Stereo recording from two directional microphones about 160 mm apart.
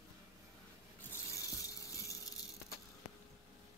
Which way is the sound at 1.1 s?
20° left (ahead or behind).